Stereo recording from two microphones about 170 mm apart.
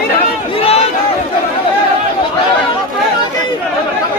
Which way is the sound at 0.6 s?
35° left (ahead or behind).